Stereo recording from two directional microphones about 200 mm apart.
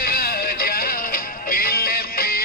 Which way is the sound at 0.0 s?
50° left (ahead or behind).